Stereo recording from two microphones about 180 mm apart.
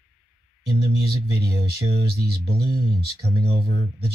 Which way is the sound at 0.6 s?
60° right (ahead or behind).